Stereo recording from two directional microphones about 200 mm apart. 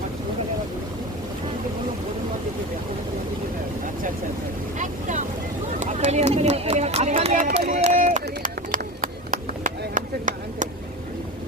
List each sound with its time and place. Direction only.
4.8 s boat: 40° right (ahead or behind)
5.8 s run: 35° right (ahead or behind)
7.4 s run: 45° right (ahead or behind)